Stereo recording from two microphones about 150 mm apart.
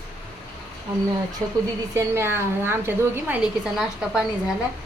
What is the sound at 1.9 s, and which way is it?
A woman's voice, 15° right (ahead or behind).